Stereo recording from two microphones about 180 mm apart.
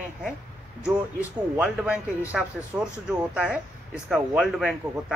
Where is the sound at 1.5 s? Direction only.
10° right (ahead or behind).